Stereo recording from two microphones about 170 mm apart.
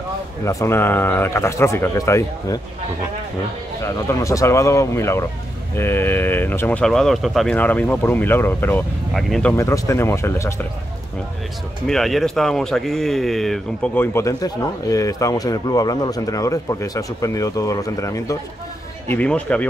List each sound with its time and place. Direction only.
0.5 s speech: 15° left (ahead or behind)
3.8 s speech: 20° left (ahead or behind)
11.9 s speech: centre (ahead or behind); by 18.4 s 20° left (ahead or behind)
19.0 s speech: 10° left (ahead or behind)